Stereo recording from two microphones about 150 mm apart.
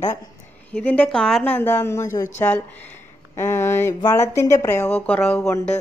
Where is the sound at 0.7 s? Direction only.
10° left (ahead or behind).